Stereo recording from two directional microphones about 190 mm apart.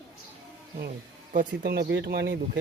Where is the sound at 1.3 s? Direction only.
50° right (ahead or behind).